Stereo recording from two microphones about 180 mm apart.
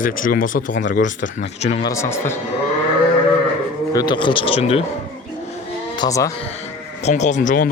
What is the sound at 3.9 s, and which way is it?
Speech, 25° left (ahead or behind).